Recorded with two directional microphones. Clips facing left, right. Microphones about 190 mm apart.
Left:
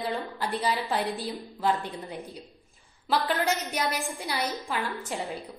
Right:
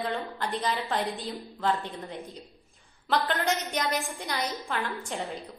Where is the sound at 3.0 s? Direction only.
Centre (ahead or behind).